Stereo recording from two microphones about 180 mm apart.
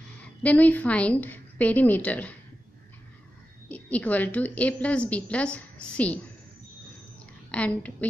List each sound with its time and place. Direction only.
0.2 s a woman's voice: 10° left (ahead or behind)
3.6 s a woman's voice: 10° left (ahead or behind)
7.5 s a woman's voice: 10° left (ahead or behind)